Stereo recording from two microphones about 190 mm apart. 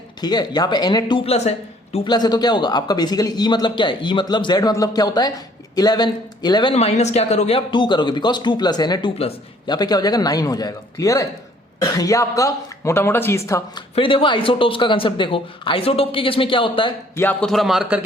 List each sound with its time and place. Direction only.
0.2 s speech: 20° left (ahead or behind)
2.1 s speech: 20° left (ahead or behind)
13.9 s speech: 25° left (ahead or behind)
17.2 s a man's voice: 5° left (ahead or behind)